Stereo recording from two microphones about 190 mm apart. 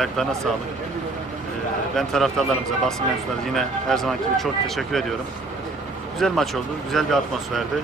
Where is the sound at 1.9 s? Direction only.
Centre (ahead or behind).